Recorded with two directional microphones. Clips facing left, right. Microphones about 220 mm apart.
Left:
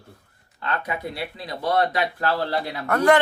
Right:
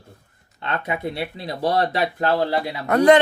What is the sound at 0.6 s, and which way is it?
Speech, 25° right (ahead or behind).